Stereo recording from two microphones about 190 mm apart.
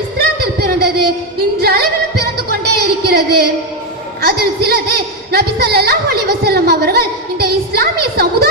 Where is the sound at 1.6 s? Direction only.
55° right (ahead or behind).